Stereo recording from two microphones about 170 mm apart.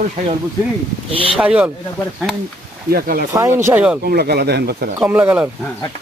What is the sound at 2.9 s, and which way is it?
Speech, 65° right (ahead or behind).